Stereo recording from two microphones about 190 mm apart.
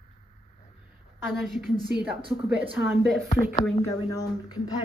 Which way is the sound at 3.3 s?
40° left (ahead or behind).